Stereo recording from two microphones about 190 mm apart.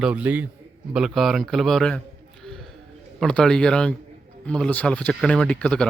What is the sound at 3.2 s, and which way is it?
A man's voice, 5° left (ahead or behind).